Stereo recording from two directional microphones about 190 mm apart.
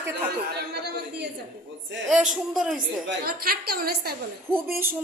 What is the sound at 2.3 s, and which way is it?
Speech, centre (ahead or behind).